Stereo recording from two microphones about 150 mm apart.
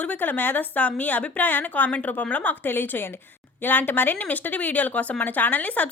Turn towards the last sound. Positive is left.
turn(degrees=10)  # may be behind; listen again after turning